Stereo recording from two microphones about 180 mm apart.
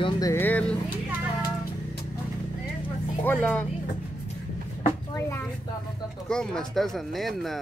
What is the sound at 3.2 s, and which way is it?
Speech, 10° left (ahead or behind).